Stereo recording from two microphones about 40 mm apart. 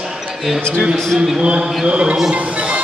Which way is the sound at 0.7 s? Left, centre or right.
Centre.